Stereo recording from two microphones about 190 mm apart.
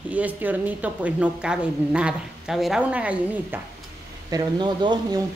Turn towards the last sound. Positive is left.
turn(degrees=-20)  # may be behind; listen again after turning